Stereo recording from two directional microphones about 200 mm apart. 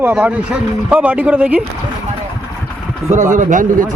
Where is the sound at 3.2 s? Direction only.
40° right (ahead or behind).